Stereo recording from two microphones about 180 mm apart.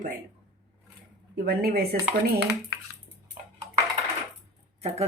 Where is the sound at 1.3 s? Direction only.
60° right (ahead or behind).